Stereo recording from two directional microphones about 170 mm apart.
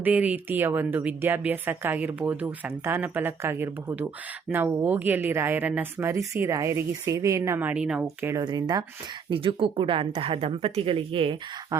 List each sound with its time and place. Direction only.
0.0 s a woman's voice: 10° right (ahead or behind)
8.3 s a woman's voice: 25° right (ahead or behind)
11.7 s a woman's voice: 15° right (ahead or behind)